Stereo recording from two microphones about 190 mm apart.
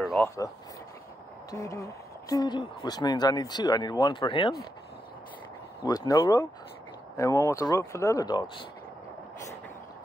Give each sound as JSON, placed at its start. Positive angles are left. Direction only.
{"t": 0.0, "sound": "a sound", "side_deg": 0}
{"t": 1.5, "sound": "speech", "side_deg": 15}
{"t": 5.9, "sound": "speech", "side_deg": 20}